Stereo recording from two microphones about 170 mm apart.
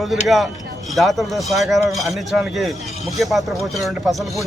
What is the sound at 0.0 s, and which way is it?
Speech, centre (ahead or behind).